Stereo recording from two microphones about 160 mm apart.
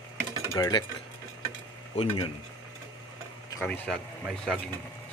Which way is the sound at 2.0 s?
35° left (ahead or behind).